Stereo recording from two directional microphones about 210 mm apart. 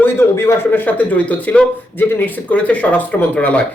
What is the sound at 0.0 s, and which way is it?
Speech, 10° left (ahead or behind).